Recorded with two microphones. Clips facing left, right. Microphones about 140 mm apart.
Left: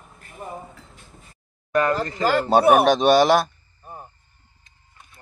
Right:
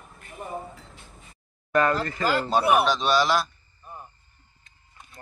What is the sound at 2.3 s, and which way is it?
Speech, 60° left (ahead or behind).